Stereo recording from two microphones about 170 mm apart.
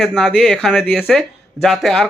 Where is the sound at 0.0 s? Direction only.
5° left (ahead or behind).